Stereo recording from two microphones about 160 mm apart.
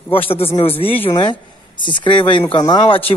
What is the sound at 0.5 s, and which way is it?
Speech, 35° left (ahead or behind).